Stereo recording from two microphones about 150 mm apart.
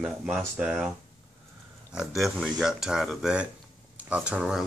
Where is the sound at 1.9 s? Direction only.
Centre (ahead or behind).